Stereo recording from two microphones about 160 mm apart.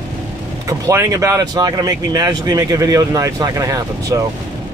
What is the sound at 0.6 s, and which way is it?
Speech, 20° right (ahead or behind).